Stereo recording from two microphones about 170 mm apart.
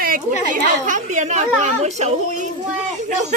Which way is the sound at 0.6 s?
45° right (ahead or behind).